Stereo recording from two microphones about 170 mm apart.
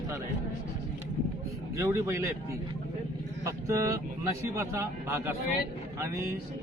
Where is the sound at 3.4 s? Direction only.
20° right (ahead or behind).